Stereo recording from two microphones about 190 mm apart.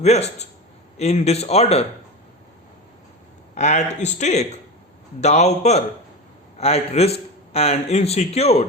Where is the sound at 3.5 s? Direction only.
35° left (ahead or behind).